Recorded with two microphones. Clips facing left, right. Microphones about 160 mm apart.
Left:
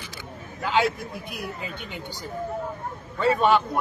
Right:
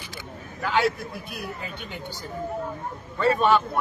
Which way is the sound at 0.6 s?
20° left (ahead or behind).